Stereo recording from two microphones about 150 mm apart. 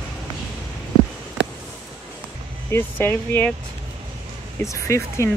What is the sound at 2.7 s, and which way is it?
Speech, 15° left (ahead or behind).